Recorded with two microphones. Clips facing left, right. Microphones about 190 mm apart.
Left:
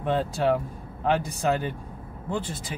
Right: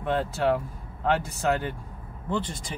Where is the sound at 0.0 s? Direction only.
15° left (ahead or behind).